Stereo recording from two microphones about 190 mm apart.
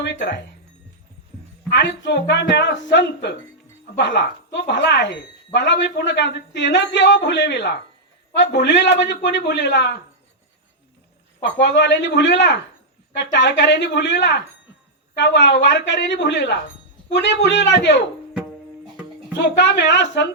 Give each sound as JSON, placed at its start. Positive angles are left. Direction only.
{"t": 0.0, "sound": "speech", "side_deg": 65}
{"t": 1.7, "sound": "a man's voice", "side_deg": 65}
{"t": 11.4, "sound": "a man's voice", "side_deg": 65}
{"t": 19.4, "sound": "a man's voice", "side_deg": 65}